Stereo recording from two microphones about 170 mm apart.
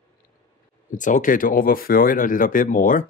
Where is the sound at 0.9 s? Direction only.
50° left (ahead or behind).